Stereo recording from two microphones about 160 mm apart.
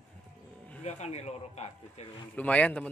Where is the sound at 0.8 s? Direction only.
45° left (ahead or behind).